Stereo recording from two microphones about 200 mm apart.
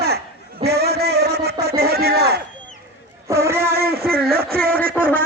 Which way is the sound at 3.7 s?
50° right (ahead or behind).